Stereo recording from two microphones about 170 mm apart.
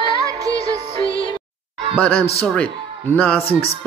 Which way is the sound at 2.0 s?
10° left (ahead or behind).